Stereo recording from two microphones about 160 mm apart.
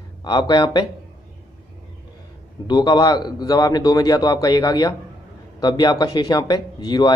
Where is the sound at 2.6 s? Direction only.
25° left (ahead or behind).